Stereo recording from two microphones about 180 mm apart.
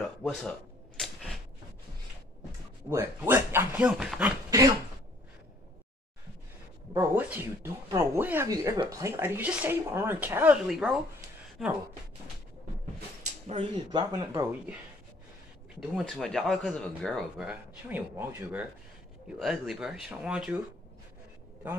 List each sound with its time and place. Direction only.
0.2 s a sound: centre (ahead or behind)
2.9 s speech: 15° right (ahead or behind)
4.5 s dog: 20° right (ahead or behind)
6.9 s speech: 15° right (ahead or behind)
13.5 s speech: 25° right (ahead or behind)
16.0 s speech: centre (ahead or behind)